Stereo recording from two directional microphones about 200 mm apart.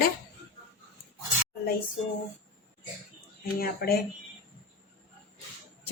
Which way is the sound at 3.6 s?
50° left (ahead or behind).